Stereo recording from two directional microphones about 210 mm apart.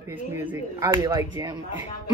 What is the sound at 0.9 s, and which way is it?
Speech, 15° right (ahead or behind).